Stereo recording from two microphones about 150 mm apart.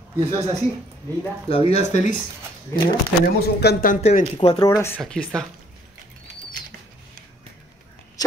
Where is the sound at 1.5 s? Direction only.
40° left (ahead or behind).